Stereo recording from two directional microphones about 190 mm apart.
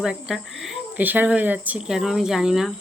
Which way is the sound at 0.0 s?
5° right (ahead or behind).